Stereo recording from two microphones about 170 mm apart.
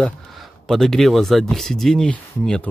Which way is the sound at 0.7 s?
Centre (ahead or behind).